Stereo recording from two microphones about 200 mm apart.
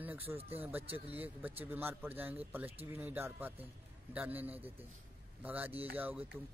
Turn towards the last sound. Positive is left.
turn(degrees=-10)  # may be behind; listen again after turning